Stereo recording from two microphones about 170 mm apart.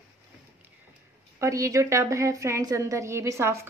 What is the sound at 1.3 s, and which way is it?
A woman's voice, 20° right (ahead or behind).